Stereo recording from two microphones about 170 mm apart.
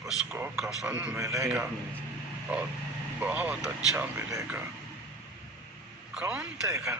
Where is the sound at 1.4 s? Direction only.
5° right (ahead or behind).